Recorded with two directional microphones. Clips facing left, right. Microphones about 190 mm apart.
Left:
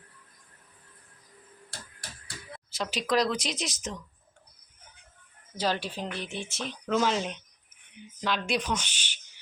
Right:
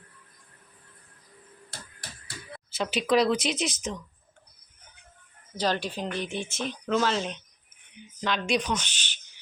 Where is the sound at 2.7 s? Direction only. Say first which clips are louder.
Right 4 dB; centre (ahead or behind).